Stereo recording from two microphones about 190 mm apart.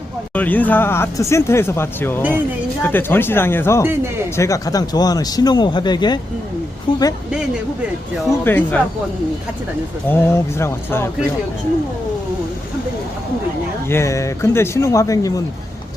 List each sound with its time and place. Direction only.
0.3 s speech: 10° left (ahead or behind)
8.4 s speech: 10° left (ahead or behind)
10.1 s speech: 15° left (ahead or behind)
13.9 s speech: 15° left (ahead or behind)